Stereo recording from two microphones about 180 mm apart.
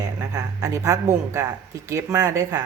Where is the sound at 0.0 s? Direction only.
20° right (ahead or behind).